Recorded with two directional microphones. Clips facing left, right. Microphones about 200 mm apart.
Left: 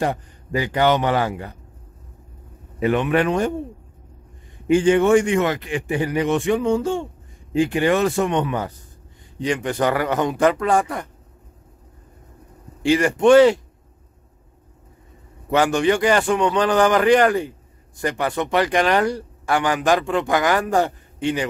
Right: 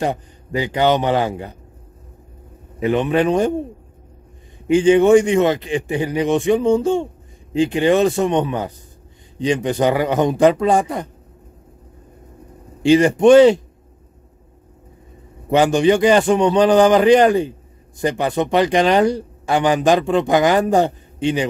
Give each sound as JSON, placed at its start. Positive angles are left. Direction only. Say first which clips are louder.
{"t": 0.0, "sound": "a man's voice", "louder": "right 2 dB", "side_deg": -20}
{"t": 3.0, "sound": "a man's voice", "louder": "right 5 dB", "side_deg": -20}
{"t": 4.6, "sound": "a man's voice", "louder": "right 3 dB", "side_deg": -20}
{"t": 12.8, "sound": "a man's voice", "louder": "right 4 dB", "side_deg": -20}
{"t": 15.5, "sound": "a man's voice", "louder": "right 4 dB", "side_deg": -20}